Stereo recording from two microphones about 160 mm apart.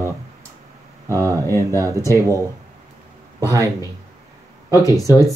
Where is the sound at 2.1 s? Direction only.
20° right (ahead or behind).